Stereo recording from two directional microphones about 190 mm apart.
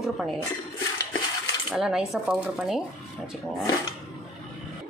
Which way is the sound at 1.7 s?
Centre (ahead or behind).